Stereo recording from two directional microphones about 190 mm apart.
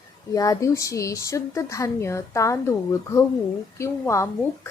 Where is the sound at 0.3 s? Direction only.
15° left (ahead or behind).